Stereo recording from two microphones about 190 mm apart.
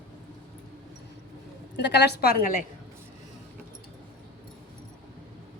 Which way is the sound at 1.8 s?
65° left (ahead or behind).